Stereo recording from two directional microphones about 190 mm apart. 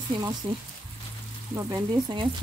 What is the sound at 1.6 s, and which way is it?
Speech, 20° right (ahead or behind).